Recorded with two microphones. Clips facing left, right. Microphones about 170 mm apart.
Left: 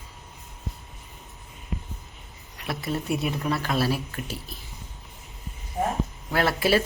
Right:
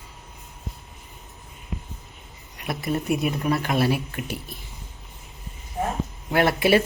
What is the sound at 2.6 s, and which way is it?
Speech, 15° right (ahead or behind).